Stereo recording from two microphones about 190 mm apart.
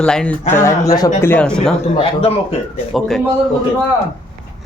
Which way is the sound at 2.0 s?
30° left (ahead or behind).